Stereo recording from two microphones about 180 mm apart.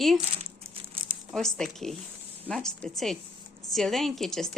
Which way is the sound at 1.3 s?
Centre (ahead or behind).